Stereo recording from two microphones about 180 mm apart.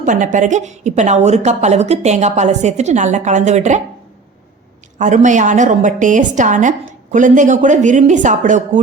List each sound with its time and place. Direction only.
0.0 s a woman's voice: 45° right (ahead or behind)
4.9 s a woman's voice: 45° right (ahead or behind)